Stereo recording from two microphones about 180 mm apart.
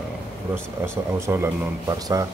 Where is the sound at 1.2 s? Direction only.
15° right (ahead or behind).